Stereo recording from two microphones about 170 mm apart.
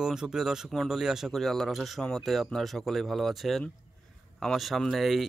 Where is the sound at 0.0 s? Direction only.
5° right (ahead or behind).